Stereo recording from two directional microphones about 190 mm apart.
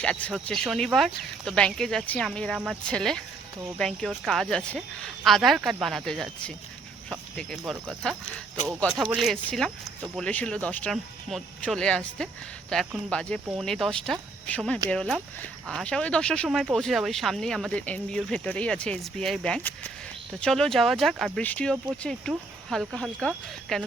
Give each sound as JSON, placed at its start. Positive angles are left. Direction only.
{"t": 0.0, "sound": "speech", "side_deg": 5}